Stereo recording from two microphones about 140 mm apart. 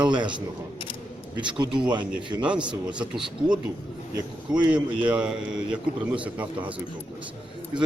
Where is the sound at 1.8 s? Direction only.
35° right (ahead or behind).